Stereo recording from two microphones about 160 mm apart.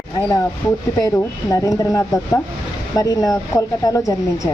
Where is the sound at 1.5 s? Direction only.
20° left (ahead or behind).